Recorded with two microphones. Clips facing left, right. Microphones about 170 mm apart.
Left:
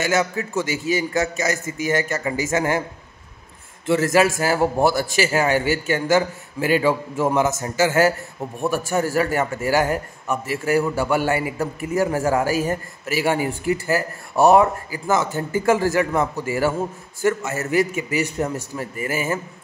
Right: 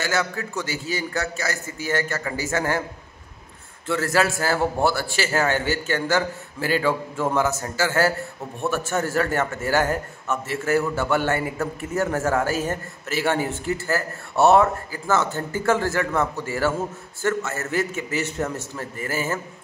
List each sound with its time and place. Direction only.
0.0 s a man's voice: 15° left (ahead or behind)
3.8 s a man's voice: 15° left (ahead or behind)